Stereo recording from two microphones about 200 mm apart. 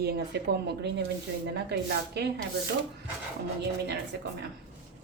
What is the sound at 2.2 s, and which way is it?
Rub, 55° right (ahead or behind).